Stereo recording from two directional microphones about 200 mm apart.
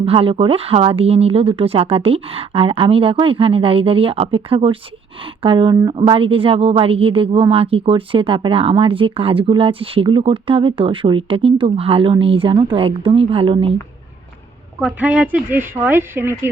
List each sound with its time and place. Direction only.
0.0 s a woman's voice: 30° right (ahead or behind)
14.8 s speech: 5° right (ahead or behind)